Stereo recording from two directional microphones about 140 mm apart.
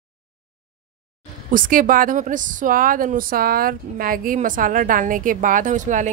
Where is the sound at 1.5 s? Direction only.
80° right.